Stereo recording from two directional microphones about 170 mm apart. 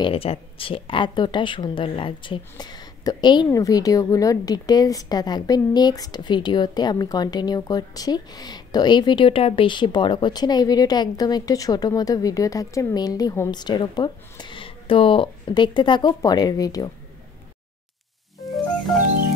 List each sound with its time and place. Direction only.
0.0 s speech: 35° left (ahead or behind)